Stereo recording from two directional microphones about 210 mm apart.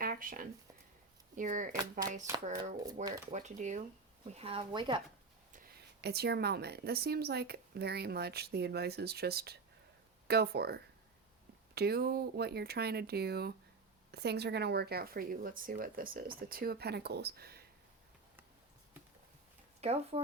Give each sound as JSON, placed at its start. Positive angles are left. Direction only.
{"t": 0.0, "sound": "a sound", "side_deg": -40}
{"t": 1.4, "sound": "speech", "side_deg": -40}
{"t": 3.0, "sound": "speech", "side_deg": -35}
{"t": 5.5, "sound": "a woman's voice", "side_deg": -50}
{"t": 19.8, "sound": "speech", "side_deg": -30}